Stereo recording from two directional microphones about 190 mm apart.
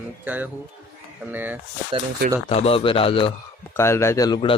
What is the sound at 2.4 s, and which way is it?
Speech, 30° left (ahead or behind).